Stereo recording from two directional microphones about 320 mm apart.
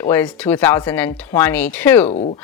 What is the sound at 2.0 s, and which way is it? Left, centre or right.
Speech, left.